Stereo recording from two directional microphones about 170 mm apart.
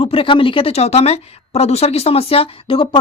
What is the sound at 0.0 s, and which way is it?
Speech, 35° left (ahead or behind).